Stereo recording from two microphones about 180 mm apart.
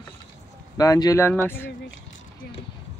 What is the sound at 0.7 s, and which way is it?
Speech, 20° left (ahead or behind).